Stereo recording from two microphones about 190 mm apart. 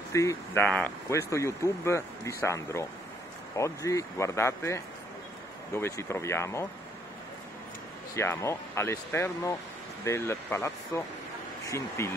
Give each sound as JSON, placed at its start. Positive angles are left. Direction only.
{"t": 0.1, "sound": "speech", "side_deg": 15}
{"t": 8.2, "sound": "speech", "side_deg": 15}